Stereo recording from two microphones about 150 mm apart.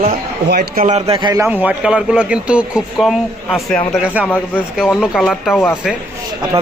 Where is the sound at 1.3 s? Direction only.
15° right (ahead or behind); by 5.6 s centre (ahead or behind).